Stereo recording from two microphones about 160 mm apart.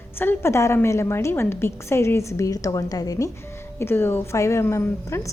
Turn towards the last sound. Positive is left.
turn(degrees=15)  # may be behind; listen again after turning